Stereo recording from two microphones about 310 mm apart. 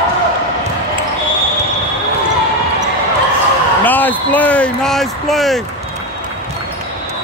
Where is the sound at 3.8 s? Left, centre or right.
Centre.